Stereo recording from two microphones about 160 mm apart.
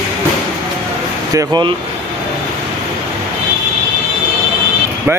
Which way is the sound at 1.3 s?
25° right (ahead or behind).